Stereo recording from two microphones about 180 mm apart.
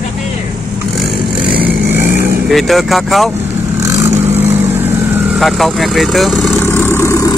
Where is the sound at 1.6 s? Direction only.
10° right (ahead or behind).